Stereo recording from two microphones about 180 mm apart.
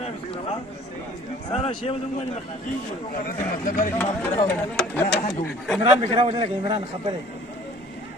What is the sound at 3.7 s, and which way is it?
Speech, 15° left (ahead or behind).